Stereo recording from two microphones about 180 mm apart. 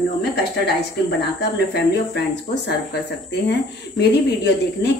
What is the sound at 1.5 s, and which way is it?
Speech, 70° left (ahead or behind).